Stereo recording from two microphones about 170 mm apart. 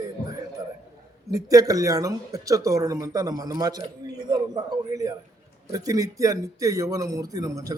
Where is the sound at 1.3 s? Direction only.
20° right (ahead or behind).